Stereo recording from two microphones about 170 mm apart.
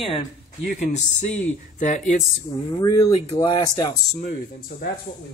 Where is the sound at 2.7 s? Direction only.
25° left (ahead or behind).